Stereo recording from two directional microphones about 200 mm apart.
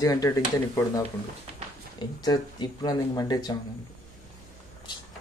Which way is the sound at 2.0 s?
20° left (ahead or behind).